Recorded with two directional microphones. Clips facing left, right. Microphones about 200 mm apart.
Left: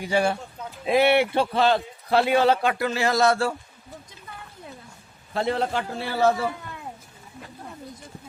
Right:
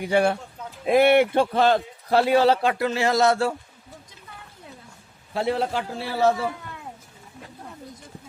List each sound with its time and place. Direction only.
0.0 s a man's voice: 60° right (ahead or behind); by 3.5 s 20° right (ahead or behind)
5.3 s a man's voice: 10° right (ahead or behind)